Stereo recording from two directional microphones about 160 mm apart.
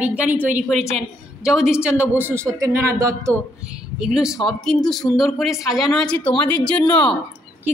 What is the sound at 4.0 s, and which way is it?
A woman's voice, 5° right (ahead or behind).